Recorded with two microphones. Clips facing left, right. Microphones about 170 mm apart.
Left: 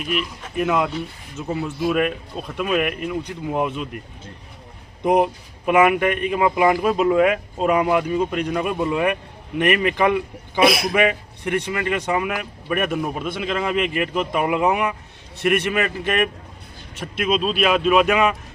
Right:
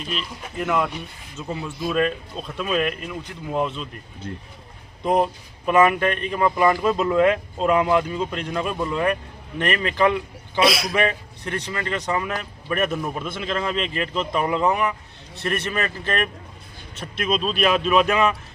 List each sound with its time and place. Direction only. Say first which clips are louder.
0.0 s speech: left 5 dB; 10° left (ahead or behind)
5.0 s speech: left 3 dB; 15° left (ahead or behind)
10.6 s a man's voice: left 3 dB; 55° left (ahead or behind)
10.9 s speech: left 3 dB; 15° left (ahead or behind)